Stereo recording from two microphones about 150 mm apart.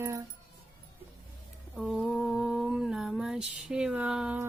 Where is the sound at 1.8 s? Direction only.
5° right (ahead or behind).